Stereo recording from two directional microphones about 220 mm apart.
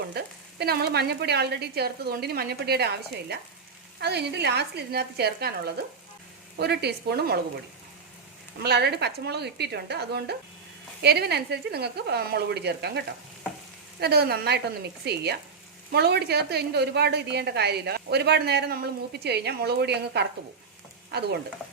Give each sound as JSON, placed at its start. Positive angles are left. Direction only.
{"t": 0.1, "sound": "a woman's voice", "side_deg": -45}
{"t": 8.6, "sound": "a woman's voice", "side_deg": -50}